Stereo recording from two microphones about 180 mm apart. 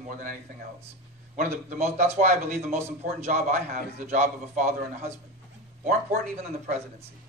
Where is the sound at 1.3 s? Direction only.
40° right (ahead or behind).